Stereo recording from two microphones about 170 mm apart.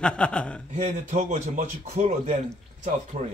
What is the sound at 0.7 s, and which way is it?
Speech, 45° right (ahead or behind).